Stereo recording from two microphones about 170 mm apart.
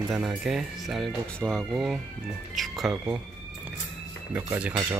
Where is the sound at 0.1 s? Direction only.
Centre (ahead or behind).